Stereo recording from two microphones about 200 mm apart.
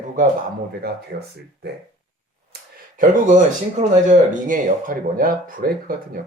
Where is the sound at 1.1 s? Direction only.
55° right (ahead or behind).